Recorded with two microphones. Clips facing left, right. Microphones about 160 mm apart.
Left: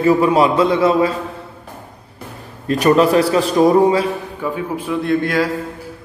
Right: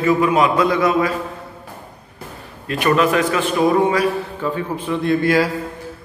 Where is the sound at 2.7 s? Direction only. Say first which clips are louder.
Left 4 dB; 35° left (ahead or behind).